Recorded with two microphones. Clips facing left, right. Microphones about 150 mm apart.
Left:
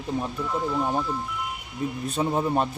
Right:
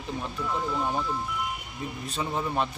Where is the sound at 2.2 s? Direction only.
40° left (ahead or behind).